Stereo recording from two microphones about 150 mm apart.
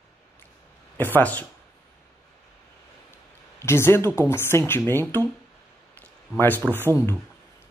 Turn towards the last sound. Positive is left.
turn(degrees=15)  # may be behind; listen again after turning